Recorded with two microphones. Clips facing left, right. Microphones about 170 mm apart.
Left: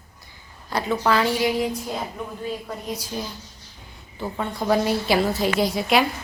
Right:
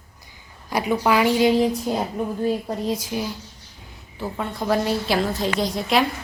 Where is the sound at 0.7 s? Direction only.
10° right (ahead or behind).